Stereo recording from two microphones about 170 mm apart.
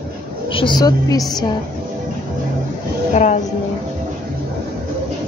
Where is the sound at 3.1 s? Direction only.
45° left (ahead or behind).